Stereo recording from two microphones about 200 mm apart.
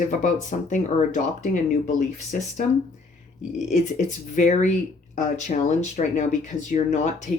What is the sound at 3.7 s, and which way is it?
Speech, 35° left (ahead or behind).